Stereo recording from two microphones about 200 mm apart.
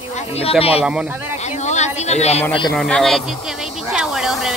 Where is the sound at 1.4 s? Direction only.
35° left (ahead or behind).